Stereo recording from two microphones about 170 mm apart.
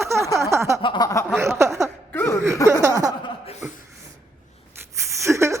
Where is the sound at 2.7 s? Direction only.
20° right (ahead or behind).